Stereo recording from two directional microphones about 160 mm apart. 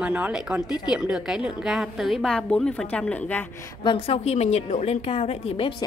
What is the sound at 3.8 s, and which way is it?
Speech, 30° left (ahead or behind).